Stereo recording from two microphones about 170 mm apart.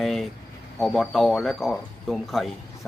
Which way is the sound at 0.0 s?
Centre (ahead or behind).